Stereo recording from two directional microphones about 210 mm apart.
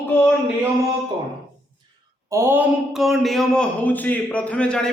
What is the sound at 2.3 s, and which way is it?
A man's voice, 10° right (ahead or behind).